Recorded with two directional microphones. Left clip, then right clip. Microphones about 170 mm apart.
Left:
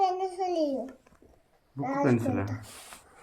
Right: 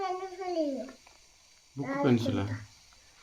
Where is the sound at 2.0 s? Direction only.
40° right (ahead or behind).